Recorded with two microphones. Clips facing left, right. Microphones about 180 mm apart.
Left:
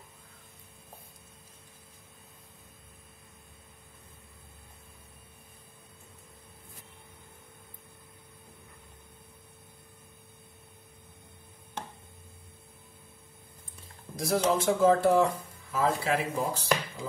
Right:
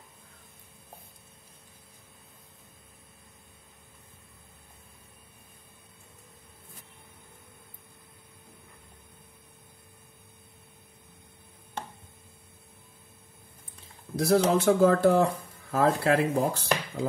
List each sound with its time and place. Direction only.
14.1 s speech: 65° right (ahead or behind)